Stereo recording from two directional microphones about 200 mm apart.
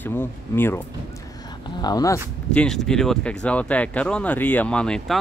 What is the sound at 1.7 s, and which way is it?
Speech, 20° left (ahead or behind).